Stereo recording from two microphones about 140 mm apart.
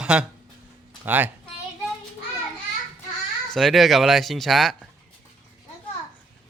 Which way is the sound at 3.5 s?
Centre (ahead or behind).